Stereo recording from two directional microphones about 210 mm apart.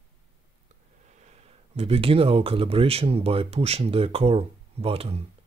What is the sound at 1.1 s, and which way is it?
Speech, 35° right (ahead or behind).